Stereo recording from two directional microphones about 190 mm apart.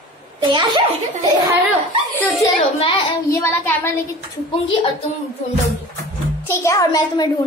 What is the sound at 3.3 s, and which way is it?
Speech, 15° left (ahead or behind).